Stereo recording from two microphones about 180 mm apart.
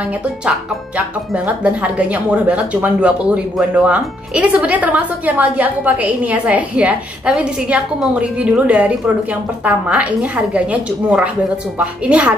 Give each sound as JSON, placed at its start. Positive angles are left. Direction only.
{"t": 0.5, "sound": "speech", "side_deg": -5}